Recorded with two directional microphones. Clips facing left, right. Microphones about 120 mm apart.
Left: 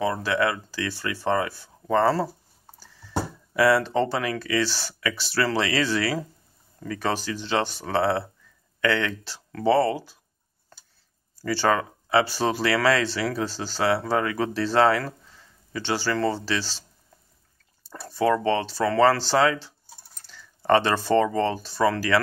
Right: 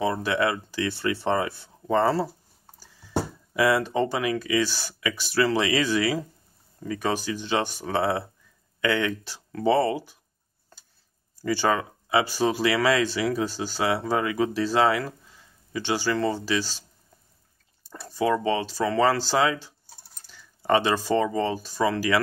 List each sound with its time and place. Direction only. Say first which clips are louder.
0.0 s speech: even; 20° right (ahead or behind)
11.4 s speech: left 1 dB; 20° right (ahead or behind)
18.1 s speech: left 2 dB; 15° right (ahead or behind)
20.2 s typing: left 3 dB; 15° right (ahead or behind)
21.2 s speech: left 2 dB; 15° right (ahead or behind)